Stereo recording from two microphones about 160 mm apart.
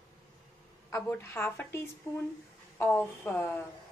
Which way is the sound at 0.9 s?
15° left (ahead or behind).